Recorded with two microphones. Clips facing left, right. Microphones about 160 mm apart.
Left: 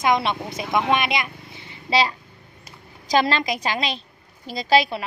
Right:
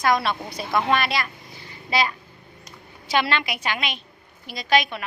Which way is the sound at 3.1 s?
40° left (ahead or behind).